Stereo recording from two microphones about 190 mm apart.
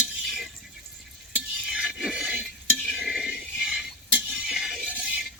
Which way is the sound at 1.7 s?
5° right (ahead or behind).